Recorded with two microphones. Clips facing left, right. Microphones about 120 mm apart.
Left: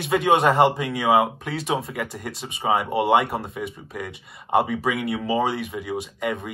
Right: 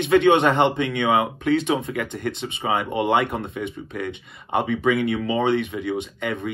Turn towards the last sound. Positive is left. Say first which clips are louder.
# even
turn(degrees=5)  # may be behind; listen again after turning